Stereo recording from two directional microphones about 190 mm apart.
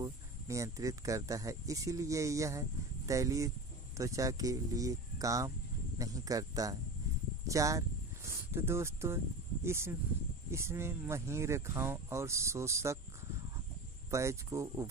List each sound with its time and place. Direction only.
0.0 s speech: 15° right (ahead or behind)
14.1 s speech: 15° right (ahead or behind)